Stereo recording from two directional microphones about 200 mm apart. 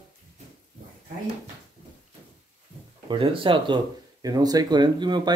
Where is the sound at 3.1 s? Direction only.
25° right (ahead or behind).